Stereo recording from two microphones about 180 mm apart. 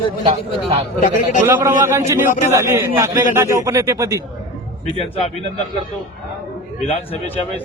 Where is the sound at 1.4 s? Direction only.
15° right (ahead or behind).